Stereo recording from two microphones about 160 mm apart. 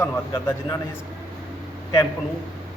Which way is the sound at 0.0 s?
15° left (ahead or behind).